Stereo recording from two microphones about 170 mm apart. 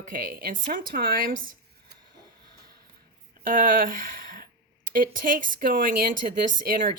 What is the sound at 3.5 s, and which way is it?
Speech, 55° right (ahead or behind).